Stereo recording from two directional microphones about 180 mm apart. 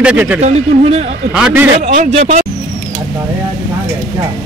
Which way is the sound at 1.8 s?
40° right (ahead or behind).